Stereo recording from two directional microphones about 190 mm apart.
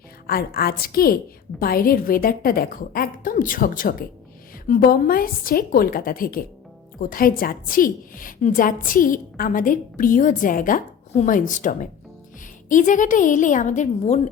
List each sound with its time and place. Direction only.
0.3 s a woman's voice: 50° left (ahead or behind)